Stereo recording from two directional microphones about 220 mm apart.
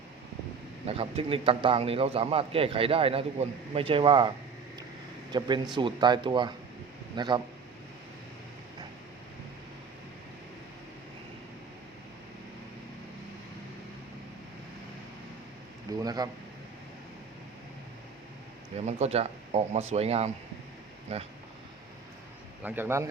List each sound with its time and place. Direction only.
0.9 s speech: 25° right (ahead or behind)
5.3 s speech: 20° right (ahead or behind)
15.9 s a man's voice: 15° right (ahead or behind)
18.9 s speech: 30° right (ahead or behind)
22.6 s a man's voice: 10° right (ahead or behind)